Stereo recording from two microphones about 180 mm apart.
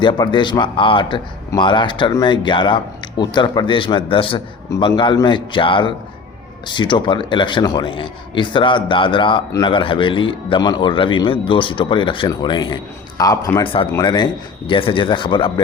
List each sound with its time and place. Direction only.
0.0 s speech: 25° left (ahead or behind)